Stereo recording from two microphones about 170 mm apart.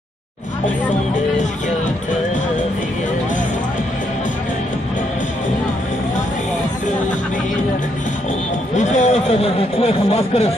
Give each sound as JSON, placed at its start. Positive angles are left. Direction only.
{"t": 8.7, "sound": "speech", "side_deg": 45}